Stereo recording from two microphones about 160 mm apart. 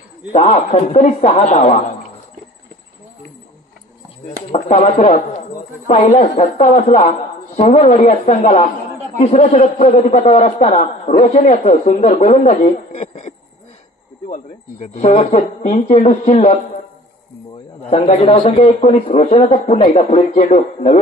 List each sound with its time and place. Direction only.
0.3 s speech: 45° left (ahead or behind)
4.5 s a man's voice: 40° left (ahead or behind)
8.1 s speech: 55° left (ahead or behind)
9.2 s a man's voice: 40° left (ahead or behind)
14.3 s a man's voice: 45° left (ahead or behind)
17.8 s a man's voice: 40° left (ahead or behind)
19.8 s speech: 35° left (ahead or behind)